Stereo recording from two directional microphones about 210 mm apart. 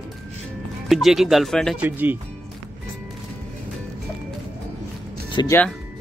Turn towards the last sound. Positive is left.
turn(degrees=20)  # may be behind; listen again after turning